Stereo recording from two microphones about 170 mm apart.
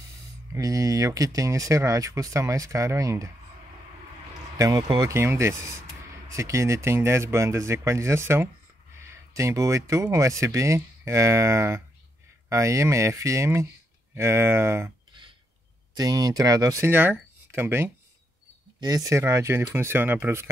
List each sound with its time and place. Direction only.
0.6 s speech: 20° right (ahead or behind)
4.6 s speech: 20° right (ahead or behind)
15.9 s speech: 20° right (ahead or behind)